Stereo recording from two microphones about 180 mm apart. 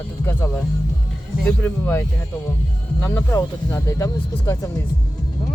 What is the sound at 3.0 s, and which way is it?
Speech, 15° left (ahead or behind).